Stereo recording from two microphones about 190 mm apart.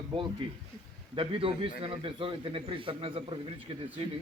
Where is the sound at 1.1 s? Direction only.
30° right (ahead or behind).